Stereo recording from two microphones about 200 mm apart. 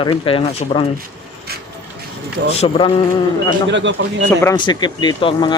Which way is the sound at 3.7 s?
65° right (ahead or behind).